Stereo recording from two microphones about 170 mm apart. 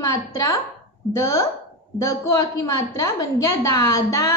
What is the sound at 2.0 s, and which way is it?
Speech, 20° left (ahead or behind).